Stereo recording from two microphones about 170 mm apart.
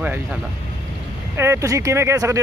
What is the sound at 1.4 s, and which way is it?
Speech, 15° right (ahead or behind).